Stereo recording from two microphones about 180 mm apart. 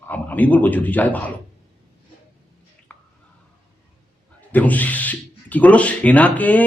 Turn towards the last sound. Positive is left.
turn(degrees=10)  # may be behind; listen again after turning